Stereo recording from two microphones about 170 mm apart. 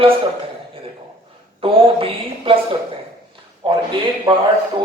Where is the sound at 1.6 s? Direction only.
30° right (ahead or behind).